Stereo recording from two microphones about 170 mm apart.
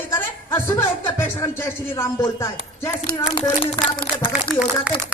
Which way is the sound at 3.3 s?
30° left (ahead or behind).